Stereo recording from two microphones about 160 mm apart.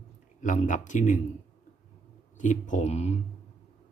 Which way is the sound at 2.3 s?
50° left (ahead or behind).